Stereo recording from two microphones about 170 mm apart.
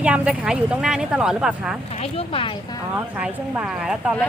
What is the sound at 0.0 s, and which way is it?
Speech, 5° right (ahead or behind).